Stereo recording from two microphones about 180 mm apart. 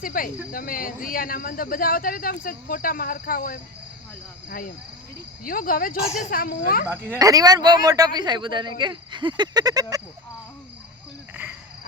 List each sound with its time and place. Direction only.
0.0 s speech: 50° left (ahead or behind)
5.5 s speech: 50° left (ahead or behind)
6.8 s speech: 10° right (ahead or behind)